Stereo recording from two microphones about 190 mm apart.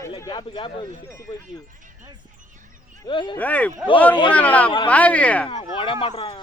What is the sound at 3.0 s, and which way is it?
Speech, 25° left (ahead or behind).